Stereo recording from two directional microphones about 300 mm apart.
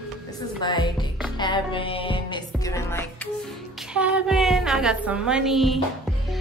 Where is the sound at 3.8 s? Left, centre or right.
Centre.